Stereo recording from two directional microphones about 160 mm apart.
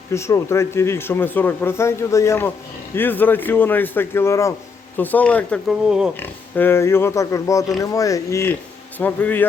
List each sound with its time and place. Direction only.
0.1 s a man's voice: 15° left (ahead or behind)
5.6 s speech: 5° right (ahead or behind)
6.1 s a man's voice: 15° left (ahead or behind)